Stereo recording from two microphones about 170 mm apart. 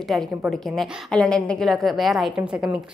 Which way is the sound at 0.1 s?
Centre (ahead or behind).